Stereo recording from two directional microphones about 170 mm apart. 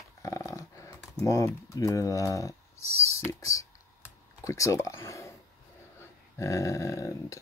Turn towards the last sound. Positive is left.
turn(degrees=20)  # may be behind; listen again after turning